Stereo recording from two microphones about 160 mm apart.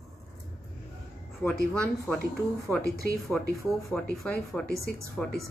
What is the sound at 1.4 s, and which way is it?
Speech, 5° left (ahead or behind).